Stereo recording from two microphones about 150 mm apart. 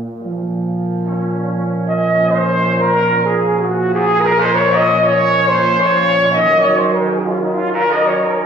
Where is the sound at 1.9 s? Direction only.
Centre (ahead or behind).